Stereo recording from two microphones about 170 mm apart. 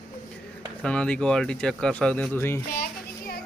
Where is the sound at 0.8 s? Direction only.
5° left (ahead or behind).